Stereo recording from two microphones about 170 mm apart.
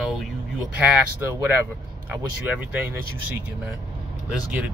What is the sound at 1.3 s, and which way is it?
Speech, 15° right (ahead or behind).